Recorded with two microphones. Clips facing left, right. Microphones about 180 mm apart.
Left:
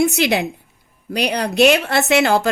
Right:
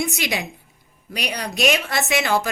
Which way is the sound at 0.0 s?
65° left (ahead or behind).